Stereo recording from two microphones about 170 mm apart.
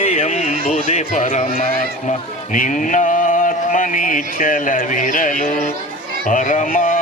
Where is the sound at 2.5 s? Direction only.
50° left (ahead or behind).